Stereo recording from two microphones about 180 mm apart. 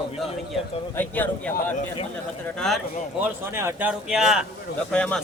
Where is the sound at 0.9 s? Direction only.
10° left (ahead or behind).